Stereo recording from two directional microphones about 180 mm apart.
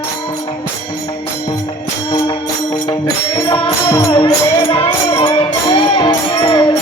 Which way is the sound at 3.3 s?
20° left (ahead or behind).